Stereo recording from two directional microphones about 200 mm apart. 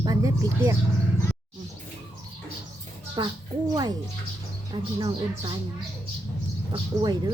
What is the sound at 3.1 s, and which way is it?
A woman's voice, 20° right (ahead or behind).